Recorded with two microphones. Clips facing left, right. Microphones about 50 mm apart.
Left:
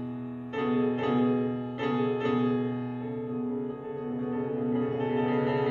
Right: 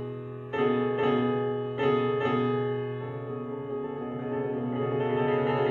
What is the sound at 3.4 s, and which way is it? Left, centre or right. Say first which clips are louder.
Music: left 3 dB; right.